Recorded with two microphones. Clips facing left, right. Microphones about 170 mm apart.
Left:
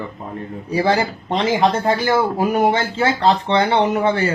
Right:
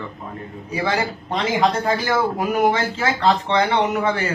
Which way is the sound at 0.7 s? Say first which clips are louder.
Left 5 dB; 35° left (ahead or behind).